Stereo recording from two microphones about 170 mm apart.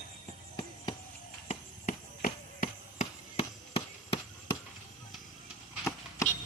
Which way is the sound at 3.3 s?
35° left (ahead or behind).